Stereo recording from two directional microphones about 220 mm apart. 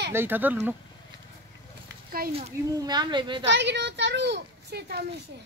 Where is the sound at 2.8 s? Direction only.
20° right (ahead or behind).